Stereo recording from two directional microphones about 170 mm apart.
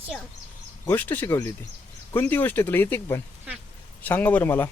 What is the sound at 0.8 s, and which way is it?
Speech, 10° left (ahead or behind).